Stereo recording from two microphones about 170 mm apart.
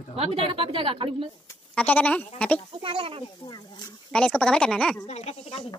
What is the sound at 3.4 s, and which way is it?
Speech, 25° left (ahead or behind).